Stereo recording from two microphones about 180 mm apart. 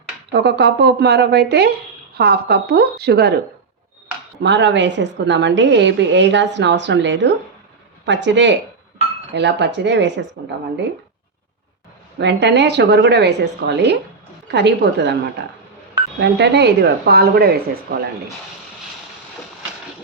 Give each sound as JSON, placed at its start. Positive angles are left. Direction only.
{"t": 0.3, "sound": "a woman's voice", "side_deg": -65}
{"t": 4.4, "sound": "a woman's voice", "side_deg": -80}
{"t": 12.2, "sound": "a woman's voice", "side_deg": -70}
{"t": 16.2, "sound": "a woman's voice", "side_deg": -70}